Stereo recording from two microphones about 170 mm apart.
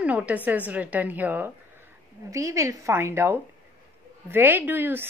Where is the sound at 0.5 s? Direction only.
10° right (ahead or behind).